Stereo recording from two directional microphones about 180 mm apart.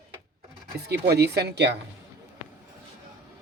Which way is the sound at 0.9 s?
65° right (ahead or behind).